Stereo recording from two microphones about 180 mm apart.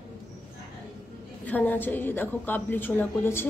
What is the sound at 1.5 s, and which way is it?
A woman's voice, 10° left (ahead or behind).